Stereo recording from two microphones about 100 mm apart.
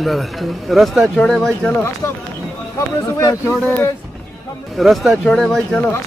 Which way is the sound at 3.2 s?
35° left (ahead or behind).